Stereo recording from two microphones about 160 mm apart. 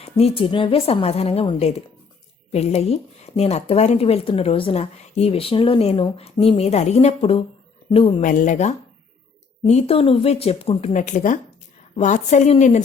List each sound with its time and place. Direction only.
0.0 s speech: 40° left (ahead or behind)
8.2 s a woman's voice: 55° left (ahead or behind)